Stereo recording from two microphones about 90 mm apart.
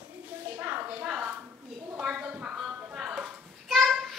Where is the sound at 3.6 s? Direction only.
Centre (ahead or behind).